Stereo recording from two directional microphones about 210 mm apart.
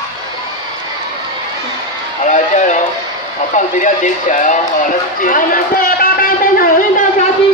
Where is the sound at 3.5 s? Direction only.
35° left (ahead or behind).